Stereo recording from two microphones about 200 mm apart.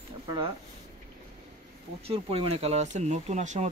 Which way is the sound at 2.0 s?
30° right (ahead or behind).